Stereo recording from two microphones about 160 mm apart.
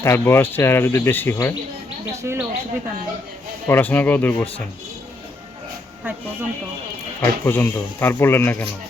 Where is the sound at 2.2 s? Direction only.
15° right (ahead or behind).